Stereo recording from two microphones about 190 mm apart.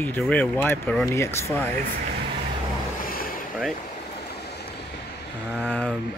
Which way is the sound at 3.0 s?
50° left (ahead or behind).